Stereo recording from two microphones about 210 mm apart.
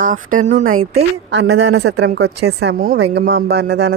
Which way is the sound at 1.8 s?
75° right (ahead or behind).